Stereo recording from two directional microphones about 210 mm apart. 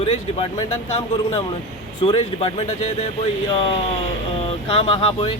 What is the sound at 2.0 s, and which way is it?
Speech, 25° left (ahead or behind).